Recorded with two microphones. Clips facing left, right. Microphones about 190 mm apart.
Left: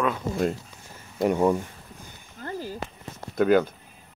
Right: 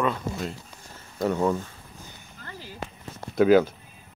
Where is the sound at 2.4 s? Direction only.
45° left (ahead or behind).